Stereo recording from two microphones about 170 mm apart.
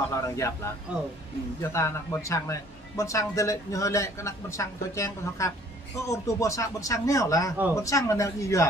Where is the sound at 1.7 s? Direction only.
20° left (ahead or behind).